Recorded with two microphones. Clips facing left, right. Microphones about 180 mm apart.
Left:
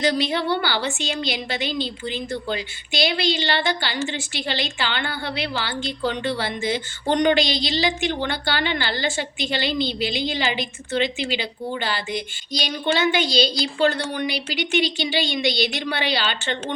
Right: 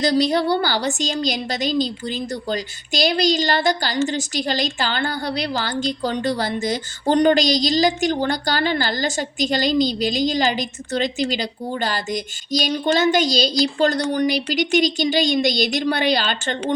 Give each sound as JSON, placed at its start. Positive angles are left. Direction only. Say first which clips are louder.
{"t": 0.0, "sound": "a woman's voice", "louder": "right 4 dB", "side_deg": -40}